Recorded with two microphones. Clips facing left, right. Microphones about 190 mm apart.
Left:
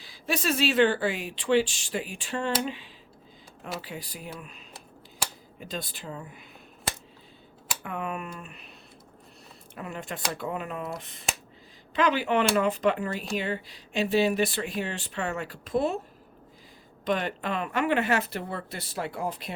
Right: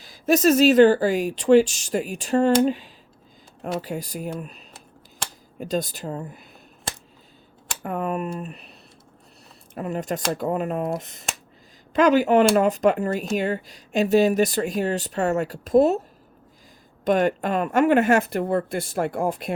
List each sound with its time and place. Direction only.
0.0 s speech: 45° right (ahead or behind)
7.8 s speech: 40° right (ahead or behind)
9.7 s speech: 40° right (ahead or behind)
17.0 s speech: 45° right (ahead or behind)